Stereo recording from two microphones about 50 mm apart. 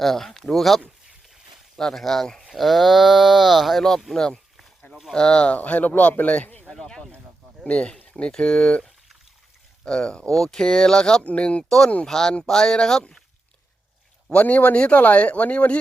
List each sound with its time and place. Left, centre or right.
0.0 s speech: centre
1.8 s speech: centre
5.5 s speech: left
6.7 s a sound: centre
7.6 s speech: left
9.8 s speech: centre
11.2 s speech: left
12.0 s speech: centre
14.3 s speech: left